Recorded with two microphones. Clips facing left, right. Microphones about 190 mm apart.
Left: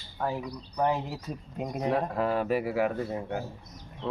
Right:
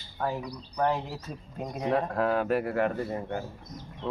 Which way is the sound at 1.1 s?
5° left (ahead or behind).